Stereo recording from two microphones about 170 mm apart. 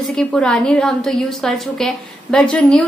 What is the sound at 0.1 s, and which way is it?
A woman's voice, 5° left (ahead or behind).